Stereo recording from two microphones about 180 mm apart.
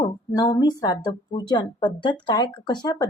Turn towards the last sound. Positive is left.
turn(degrees=25)  # may be behind; listen again after turning